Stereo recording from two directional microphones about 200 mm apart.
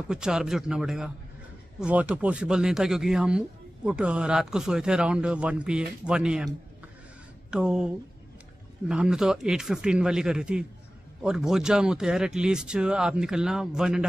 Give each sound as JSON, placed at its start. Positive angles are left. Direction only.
{"t": 0.1, "sound": "speech", "side_deg": -5}
{"t": 7.5, "sound": "speech", "side_deg": -5}